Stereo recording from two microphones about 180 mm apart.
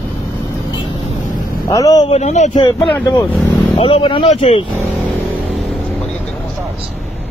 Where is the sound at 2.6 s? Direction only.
25° left (ahead or behind).